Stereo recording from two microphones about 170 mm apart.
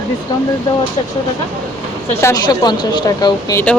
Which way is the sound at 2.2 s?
20° left (ahead or behind).